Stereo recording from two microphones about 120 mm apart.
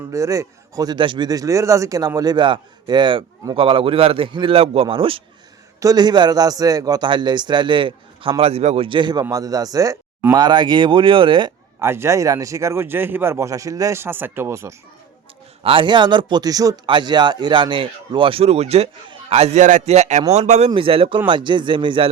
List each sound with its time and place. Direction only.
0.1 s speech: 25° right (ahead or behind)
0.9 s a man's voice: 40° right (ahead or behind)
5.8 s a man's voice: 35° right (ahead or behind)
11.8 s speech: 20° right (ahead or behind)
15.6 s a man's voice: 45° right (ahead or behind); by 20.7 s 70° right (ahead or behind)
20.7 s a man's voice: 50° right (ahead or behind)